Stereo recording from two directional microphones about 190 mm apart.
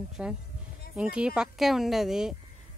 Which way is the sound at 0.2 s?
5° right (ahead or behind).